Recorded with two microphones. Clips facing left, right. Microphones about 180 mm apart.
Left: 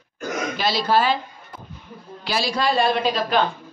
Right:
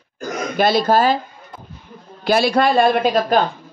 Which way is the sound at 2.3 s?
55° right (ahead or behind).